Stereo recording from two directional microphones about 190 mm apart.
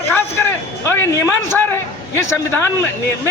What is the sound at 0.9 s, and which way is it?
A man's voice, 15° left (ahead or behind).